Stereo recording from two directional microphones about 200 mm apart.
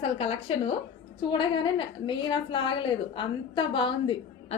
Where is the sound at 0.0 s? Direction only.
30° left (ahead or behind).